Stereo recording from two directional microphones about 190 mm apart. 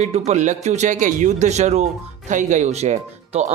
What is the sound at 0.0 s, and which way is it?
Speech, 35° right (ahead or behind).